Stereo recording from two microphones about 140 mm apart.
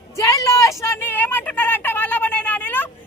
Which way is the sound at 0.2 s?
25° left (ahead or behind).